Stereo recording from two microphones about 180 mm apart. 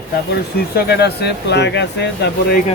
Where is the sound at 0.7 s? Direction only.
65° left (ahead or behind).